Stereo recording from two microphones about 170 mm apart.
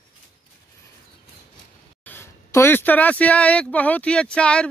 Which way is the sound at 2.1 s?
15° left (ahead or behind).